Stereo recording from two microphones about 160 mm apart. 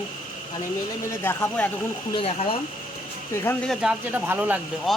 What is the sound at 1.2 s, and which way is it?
Speech, 15° left (ahead or behind).